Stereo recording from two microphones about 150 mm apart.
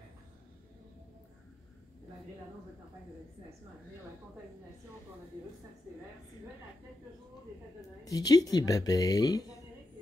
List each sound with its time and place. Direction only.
8.0 s speech: 25° left (ahead or behind)